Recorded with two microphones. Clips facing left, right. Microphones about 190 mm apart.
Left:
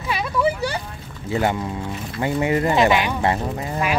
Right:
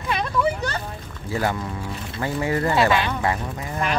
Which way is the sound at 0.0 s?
5° left (ahead or behind).